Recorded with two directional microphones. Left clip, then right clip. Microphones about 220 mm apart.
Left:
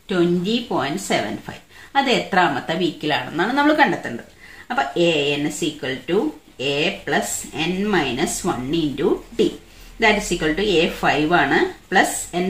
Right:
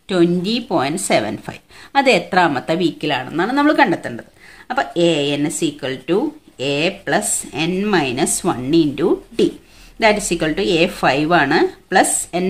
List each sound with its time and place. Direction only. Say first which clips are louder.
0.1 s speech: right 3 dB; 45° right (ahead or behind)